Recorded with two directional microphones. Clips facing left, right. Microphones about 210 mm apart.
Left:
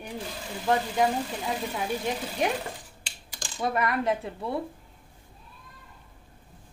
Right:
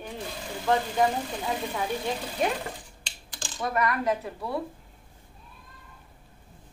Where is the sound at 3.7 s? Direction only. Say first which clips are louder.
Right 1 dB; 25° left (ahead or behind).